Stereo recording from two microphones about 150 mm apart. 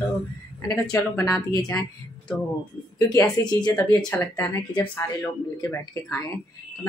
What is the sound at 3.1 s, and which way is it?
Speech, 25° left (ahead or behind).